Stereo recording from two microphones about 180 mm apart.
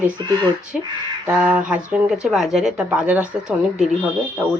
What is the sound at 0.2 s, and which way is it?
Speech, 20° right (ahead or behind).